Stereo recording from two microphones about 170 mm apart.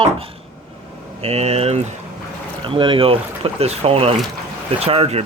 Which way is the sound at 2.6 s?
30° right (ahead or behind).